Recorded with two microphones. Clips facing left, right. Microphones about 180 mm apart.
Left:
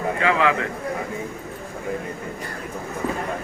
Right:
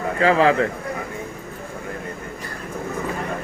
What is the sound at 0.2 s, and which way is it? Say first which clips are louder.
Speech: right 5 dB; 35° right (ahead or behind).